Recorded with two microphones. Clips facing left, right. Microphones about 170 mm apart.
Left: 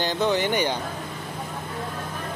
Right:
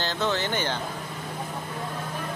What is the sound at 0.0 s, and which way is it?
Speech, 15° left (ahead or behind).